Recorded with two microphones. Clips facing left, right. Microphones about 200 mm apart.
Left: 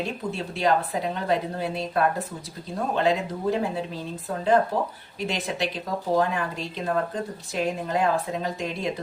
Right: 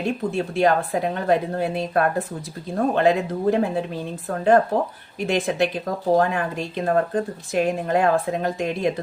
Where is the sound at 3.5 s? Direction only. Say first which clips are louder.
Right 4 dB; 55° right (ahead or behind).